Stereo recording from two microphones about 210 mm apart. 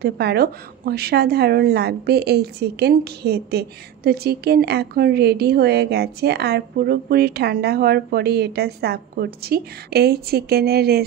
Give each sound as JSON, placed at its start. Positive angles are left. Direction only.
{"t": 0.0, "sound": "a woman's voice", "side_deg": -50}